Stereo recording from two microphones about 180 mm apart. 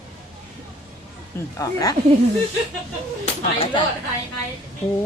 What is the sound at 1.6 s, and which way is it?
Speech, 20° left (ahead or behind).